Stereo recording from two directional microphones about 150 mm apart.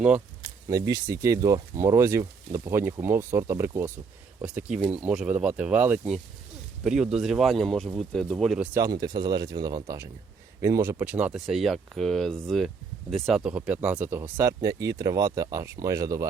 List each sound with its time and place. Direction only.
0.7 s speech: 20° right (ahead or behind); by 8.6 s centre (ahead or behind)
8.6 s speech: 20° right (ahead or behind)